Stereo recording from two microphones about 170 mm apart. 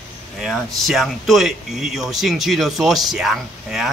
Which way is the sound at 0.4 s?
Centre (ahead or behind).